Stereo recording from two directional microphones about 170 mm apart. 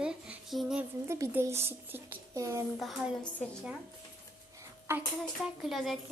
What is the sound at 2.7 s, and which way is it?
Speech, centre (ahead or behind).